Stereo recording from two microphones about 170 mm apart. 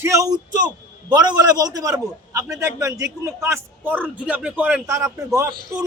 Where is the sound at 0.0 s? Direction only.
20° right (ahead or behind).